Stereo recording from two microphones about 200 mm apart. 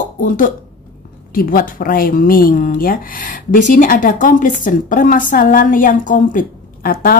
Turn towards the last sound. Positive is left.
turn(degrees=45)  # may be behind; listen again after turning